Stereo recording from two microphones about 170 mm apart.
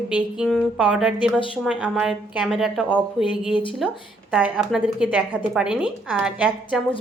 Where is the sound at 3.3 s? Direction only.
30° left (ahead or behind).